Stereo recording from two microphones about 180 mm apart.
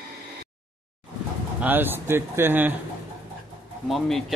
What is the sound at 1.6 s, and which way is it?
Speech, 10° right (ahead or behind).